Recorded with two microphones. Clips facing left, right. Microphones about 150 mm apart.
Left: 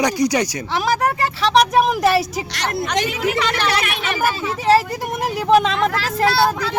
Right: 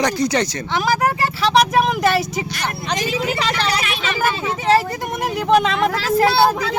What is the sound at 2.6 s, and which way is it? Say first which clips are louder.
Speech: left 6 dB; 65° left (ahead or behind).